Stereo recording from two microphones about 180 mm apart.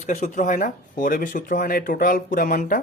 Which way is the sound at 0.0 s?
45° left (ahead or behind).